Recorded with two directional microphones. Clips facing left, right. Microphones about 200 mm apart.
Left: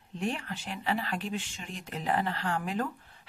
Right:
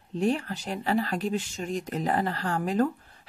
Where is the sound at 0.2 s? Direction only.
40° right (ahead or behind).